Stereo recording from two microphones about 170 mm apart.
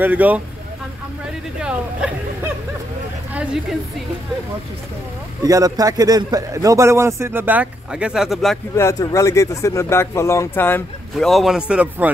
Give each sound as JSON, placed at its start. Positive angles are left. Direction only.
{"t": 0.0, "sound": "a man's voice", "side_deg": -10}
{"t": 1.6, "sound": "speech", "side_deg": -5}
{"t": 5.4, "sound": "a man's voice", "side_deg": -20}
{"t": 8.7, "sound": "speech", "side_deg": 15}
{"t": 11.1, "sound": "a man's voice", "side_deg": 0}